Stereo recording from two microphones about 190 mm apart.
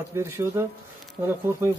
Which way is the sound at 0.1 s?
15° right (ahead or behind).